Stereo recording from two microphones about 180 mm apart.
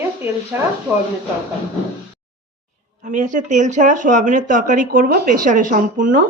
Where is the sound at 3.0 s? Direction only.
45° right (ahead or behind).